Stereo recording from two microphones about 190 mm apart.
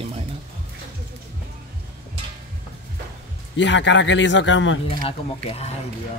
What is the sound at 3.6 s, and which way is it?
Speech, 70° left (ahead or behind).